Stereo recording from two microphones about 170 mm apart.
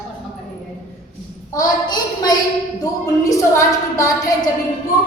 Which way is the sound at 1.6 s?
25° left (ahead or behind).